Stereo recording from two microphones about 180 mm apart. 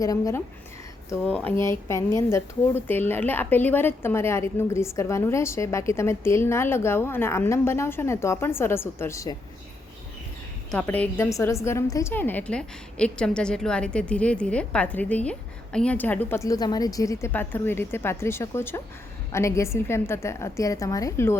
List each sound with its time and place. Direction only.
0.0 s a woman's voice: 20° left (ahead or behind)
1.2 s speech: 5° left (ahead or behind)
10.7 s speech: 10° left (ahead or behind)